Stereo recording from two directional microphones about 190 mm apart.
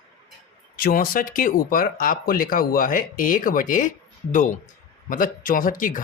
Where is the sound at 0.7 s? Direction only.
50° left (ahead or behind).